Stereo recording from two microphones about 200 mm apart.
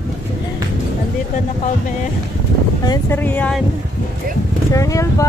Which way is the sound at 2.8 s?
15° left (ahead or behind).